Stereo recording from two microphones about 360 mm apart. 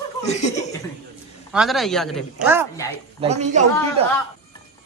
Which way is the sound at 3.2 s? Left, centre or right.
Centre.